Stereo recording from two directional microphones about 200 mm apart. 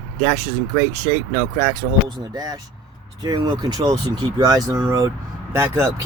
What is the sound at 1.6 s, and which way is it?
Speech, 20° right (ahead or behind).